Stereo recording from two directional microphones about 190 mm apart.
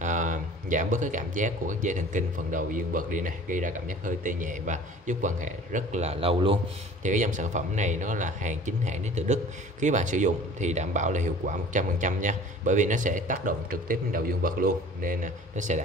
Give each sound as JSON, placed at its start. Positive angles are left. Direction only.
{"t": 0.0, "sound": "speech", "side_deg": -40}